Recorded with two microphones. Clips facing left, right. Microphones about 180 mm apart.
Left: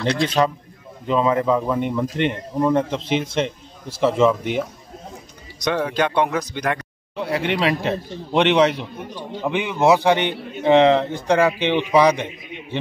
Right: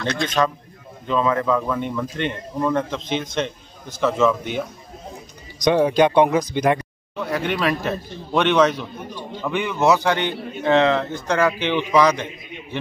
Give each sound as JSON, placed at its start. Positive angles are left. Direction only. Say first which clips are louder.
{"t": 0.0, "sound": "a man's voice", "louder": "left 2 dB", "side_deg": 30}
{"t": 1.0, "sound": "speech", "louder": "left 2 dB", "side_deg": 20}
{"t": 5.6, "sound": "speech", "louder": "right 5 dB", "side_deg": -15}
{"t": 7.5, "sound": "a man's voice", "louder": "left 1 dB", "side_deg": 20}